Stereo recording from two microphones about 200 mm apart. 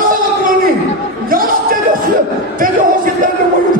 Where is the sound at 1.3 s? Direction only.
45° right (ahead or behind).